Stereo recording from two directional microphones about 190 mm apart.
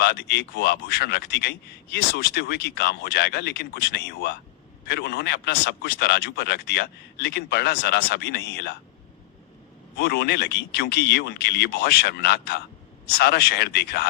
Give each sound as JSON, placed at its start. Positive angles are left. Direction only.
{"t": 0.0, "sound": "a man's voice", "side_deg": 60}
{"t": 10.0, "sound": "a man's voice", "side_deg": 60}